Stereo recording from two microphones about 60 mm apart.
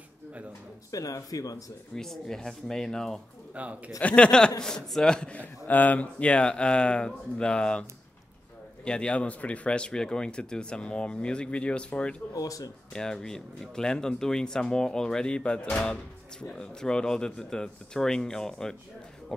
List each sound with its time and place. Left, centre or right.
0.9 s speech: left
2.0 s speech: centre
3.5 s a man's voice: right
4.0 s speech: centre
5.7 s speech: left
8.8 s speech: centre
12.4 s speech: left
12.9 s speech: centre